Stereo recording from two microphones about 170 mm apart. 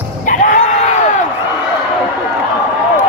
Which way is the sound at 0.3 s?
50° left (ahead or behind).